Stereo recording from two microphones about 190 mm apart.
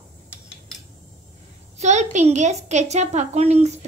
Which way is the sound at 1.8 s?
40° right (ahead or behind).